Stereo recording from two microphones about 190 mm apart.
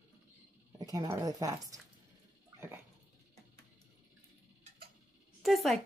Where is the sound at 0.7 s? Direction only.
20° right (ahead or behind).